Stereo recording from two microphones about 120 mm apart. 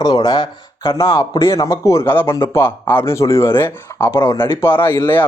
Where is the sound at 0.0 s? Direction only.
35° left (ahead or behind).